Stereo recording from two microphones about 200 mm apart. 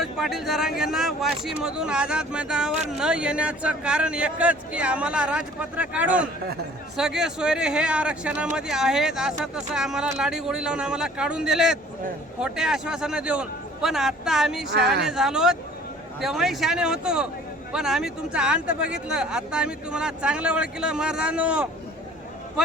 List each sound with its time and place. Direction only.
0.0 s speech: centre (ahead or behind)
14.7 s speech: 55° right (ahead or behind)
15.0 s speech: 5° right (ahead or behind)